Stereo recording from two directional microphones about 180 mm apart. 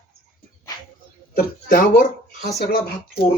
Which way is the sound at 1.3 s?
55° left (ahead or behind).